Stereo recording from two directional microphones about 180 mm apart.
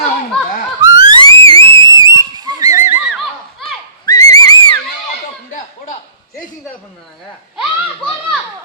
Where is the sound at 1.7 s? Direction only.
20° right (ahead or behind).